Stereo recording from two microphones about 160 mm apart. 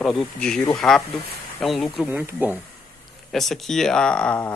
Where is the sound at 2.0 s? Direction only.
10° right (ahead or behind).